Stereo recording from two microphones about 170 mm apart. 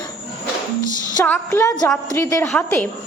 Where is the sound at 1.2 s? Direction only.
15° left (ahead or behind).